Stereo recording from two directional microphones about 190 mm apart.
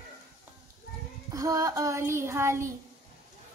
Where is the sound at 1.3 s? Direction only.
15° right (ahead or behind).